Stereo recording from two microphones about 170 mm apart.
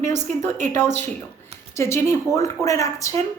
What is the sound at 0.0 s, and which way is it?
Speech, 45° right (ahead or behind).